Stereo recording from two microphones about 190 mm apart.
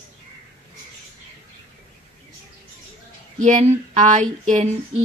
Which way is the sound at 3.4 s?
35° right (ahead or behind).